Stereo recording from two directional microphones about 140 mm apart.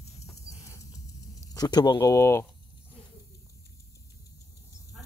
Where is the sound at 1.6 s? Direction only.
30° left (ahead or behind).